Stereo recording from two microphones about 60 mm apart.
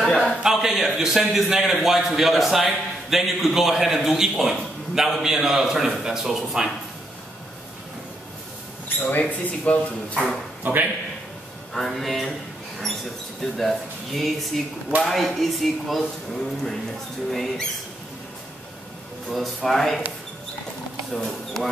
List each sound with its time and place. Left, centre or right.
0.0 s a sound: centre
0.4 s a man's voice: centre
8.8 s mouse: left
9.7 s speech: left
10.6 s a man's voice: right
11.7 s a man's voice: centre
13.4 s a man's voice: centre
19.3 s a man's voice: centre
21.1 s speech: centre